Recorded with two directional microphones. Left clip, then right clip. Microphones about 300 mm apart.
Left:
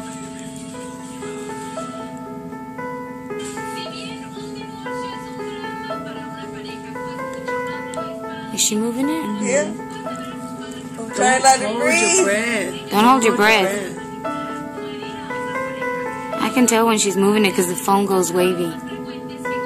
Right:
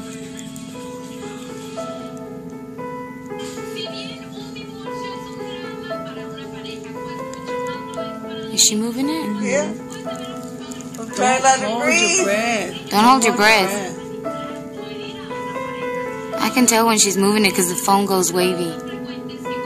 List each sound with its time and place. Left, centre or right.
8.5 s a woman's voice: centre
11.1 s a woman's voice: centre
12.3 s speech: right
12.9 s a woman's voice: centre
16.3 s a woman's voice: centre